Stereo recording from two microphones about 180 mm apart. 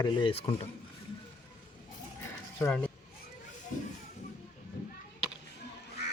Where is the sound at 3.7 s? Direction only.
45° left (ahead or behind).